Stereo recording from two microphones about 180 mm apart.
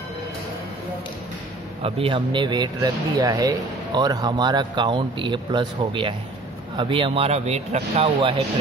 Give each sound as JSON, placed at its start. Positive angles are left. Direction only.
{"t": 1.8, "sound": "speech", "side_deg": -30}